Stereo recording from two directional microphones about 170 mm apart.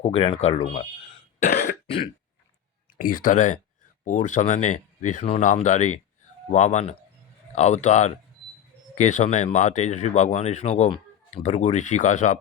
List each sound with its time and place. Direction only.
0.0 s speech: 35° left (ahead or behind)
1.5 s throat clearing: 65° left (ahead or behind)
3.0 s speech: 55° left (ahead or behind)